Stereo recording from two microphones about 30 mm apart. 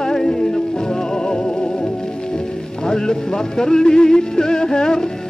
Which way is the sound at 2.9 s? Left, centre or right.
Centre.